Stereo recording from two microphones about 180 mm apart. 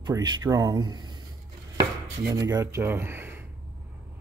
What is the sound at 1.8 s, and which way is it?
Chopping, 20° right (ahead or behind).